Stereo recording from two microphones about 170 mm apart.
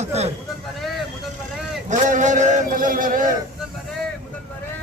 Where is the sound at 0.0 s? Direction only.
40° right (ahead or behind).